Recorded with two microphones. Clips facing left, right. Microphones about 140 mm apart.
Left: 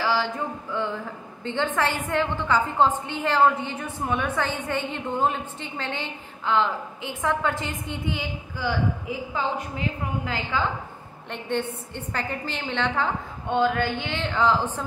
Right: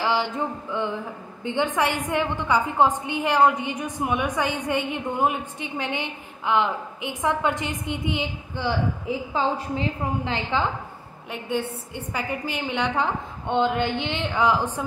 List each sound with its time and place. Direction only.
0.0 s a sound: 20° right (ahead or behind)
1.4 s a woman's voice: 15° right (ahead or behind)
11.2 s a woman's voice: 10° right (ahead or behind)